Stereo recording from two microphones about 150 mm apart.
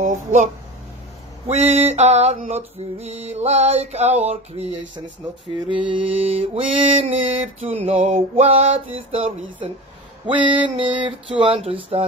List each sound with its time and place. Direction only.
0.0 s speech: 60° right (ahead or behind)
1.5 s mantra: 45° right (ahead or behind)
5.9 s mantra: 35° right (ahead or behind)